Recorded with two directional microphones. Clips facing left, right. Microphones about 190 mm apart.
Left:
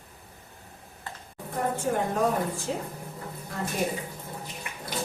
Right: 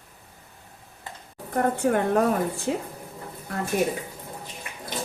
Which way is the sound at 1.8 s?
65° right (ahead or behind).